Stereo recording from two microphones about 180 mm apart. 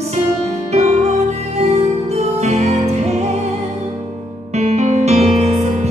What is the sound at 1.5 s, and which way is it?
Music, 35° right (ahead or behind).